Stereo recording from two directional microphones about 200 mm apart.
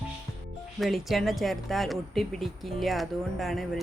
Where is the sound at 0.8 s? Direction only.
Centre (ahead or behind).